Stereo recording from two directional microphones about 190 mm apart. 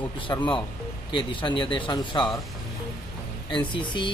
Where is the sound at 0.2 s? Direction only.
25° left (ahead or behind).